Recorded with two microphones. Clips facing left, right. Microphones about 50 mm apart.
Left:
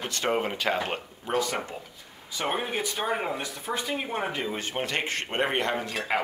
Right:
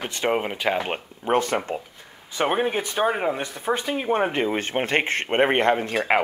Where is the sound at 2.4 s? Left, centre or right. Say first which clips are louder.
Right 6 dB; right.